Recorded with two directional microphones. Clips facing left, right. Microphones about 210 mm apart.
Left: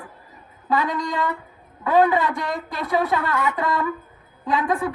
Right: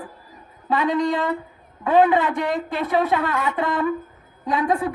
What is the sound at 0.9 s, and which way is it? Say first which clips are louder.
Speech: right 5 dB; 35° right (ahead or behind).